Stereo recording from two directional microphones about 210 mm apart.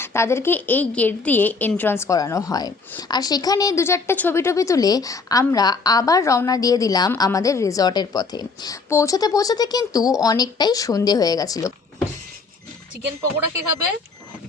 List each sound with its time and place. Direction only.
0.0 s a woman's voice: 10° left (ahead or behind)